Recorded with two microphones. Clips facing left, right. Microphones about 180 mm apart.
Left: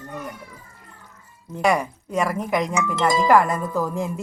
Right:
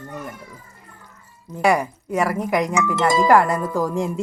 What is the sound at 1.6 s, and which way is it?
Speech, 10° right (ahead or behind).